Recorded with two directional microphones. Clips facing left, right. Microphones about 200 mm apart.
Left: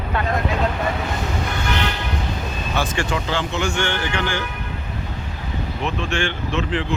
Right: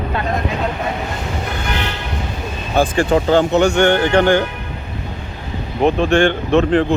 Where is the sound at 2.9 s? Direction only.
35° right (ahead or behind).